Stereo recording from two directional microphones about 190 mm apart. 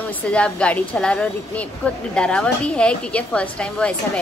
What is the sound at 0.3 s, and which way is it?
A woman's voice, 5° left (ahead or behind).